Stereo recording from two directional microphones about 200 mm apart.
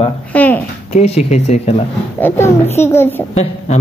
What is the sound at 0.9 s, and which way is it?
Speech, 35° left (ahead or behind).